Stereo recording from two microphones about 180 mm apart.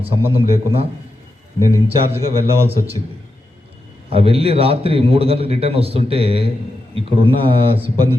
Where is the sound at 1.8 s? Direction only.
35° right (ahead or behind).